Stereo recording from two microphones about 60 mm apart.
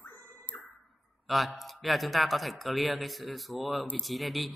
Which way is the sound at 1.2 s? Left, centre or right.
Centre.